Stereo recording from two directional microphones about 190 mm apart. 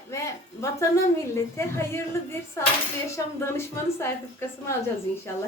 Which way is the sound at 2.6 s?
15° left (ahead or behind).